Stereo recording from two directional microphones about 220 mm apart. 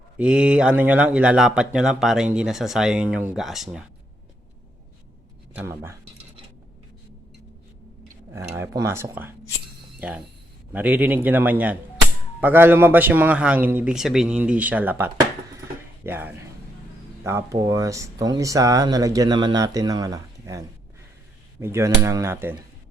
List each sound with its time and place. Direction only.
0.2 s speech: 5° right (ahead or behind)
5.5 s speech: 10° right (ahead or behind)
8.5 s speech: 10° right (ahead or behind)